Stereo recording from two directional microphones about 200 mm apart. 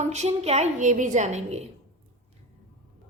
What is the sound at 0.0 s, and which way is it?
Speech, 35° right (ahead or behind).